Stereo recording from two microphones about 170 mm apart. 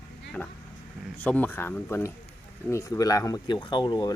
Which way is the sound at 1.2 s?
10° left (ahead or behind).